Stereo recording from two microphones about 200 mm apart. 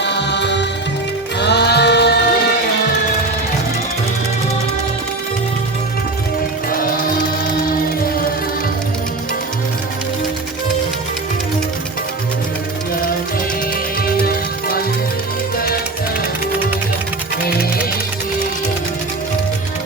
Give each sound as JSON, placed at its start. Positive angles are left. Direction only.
{"t": 0.0, "sound": "music", "side_deg": 60}
{"t": 6.7, "sound": "music", "side_deg": 45}
{"t": 14.2, "sound": "music", "side_deg": 50}